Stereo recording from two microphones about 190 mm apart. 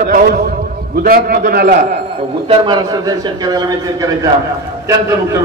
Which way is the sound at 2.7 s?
20° right (ahead or behind).